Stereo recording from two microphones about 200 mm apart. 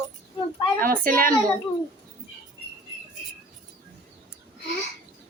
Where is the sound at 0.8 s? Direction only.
45° right (ahead or behind).